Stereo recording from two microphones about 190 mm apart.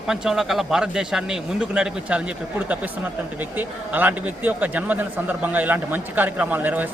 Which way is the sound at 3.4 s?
10° right (ahead or behind).